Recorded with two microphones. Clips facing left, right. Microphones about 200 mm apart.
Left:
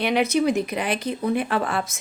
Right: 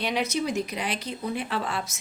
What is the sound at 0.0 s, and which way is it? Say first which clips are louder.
A woman's voice: left 7 dB; 60° left (ahead or behind).